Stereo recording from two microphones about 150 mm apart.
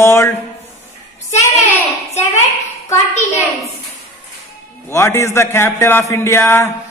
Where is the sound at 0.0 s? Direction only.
15° left (ahead or behind).